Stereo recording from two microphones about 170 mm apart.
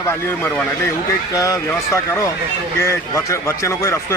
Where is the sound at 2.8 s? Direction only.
15° left (ahead or behind).